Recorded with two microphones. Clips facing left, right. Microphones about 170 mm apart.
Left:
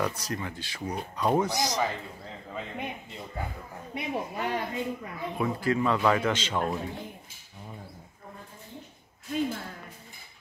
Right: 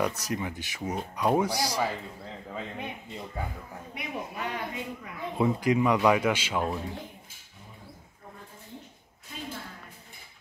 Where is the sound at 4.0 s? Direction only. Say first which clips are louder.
Left 4 dB; 30° left (ahead or behind).